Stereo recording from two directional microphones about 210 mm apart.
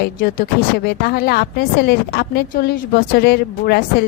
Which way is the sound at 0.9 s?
45° left (ahead or behind).